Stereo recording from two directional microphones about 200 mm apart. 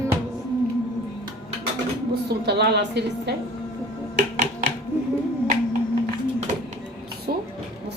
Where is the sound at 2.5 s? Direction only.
55° right (ahead or behind).